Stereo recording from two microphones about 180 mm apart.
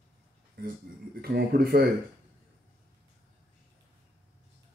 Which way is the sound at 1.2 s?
55° right (ahead or behind).